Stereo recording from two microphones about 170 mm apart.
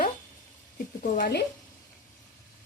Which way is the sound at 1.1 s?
65° left (ahead or behind).